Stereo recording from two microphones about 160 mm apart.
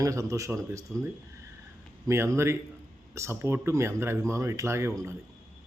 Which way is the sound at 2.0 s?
20° right (ahead or behind).